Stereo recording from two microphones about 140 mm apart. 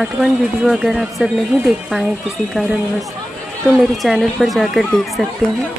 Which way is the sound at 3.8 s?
Centre (ahead or behind).